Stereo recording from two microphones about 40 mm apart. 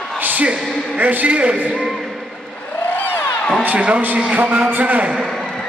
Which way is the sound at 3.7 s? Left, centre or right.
Right.